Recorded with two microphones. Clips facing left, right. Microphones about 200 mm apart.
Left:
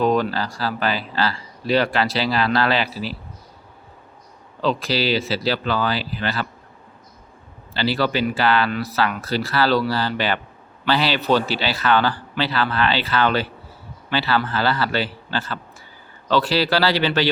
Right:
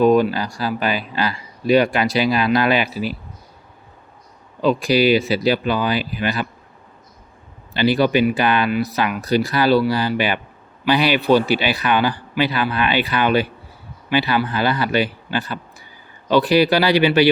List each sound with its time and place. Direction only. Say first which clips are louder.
0.0 s speech: right 5 dB; 10° right (ahead or behind)
4.6 s speech: right 6 dB; 15° right (ahead or behind)
7.7 s speech: right 5 dB; 15° right (ahead or behind)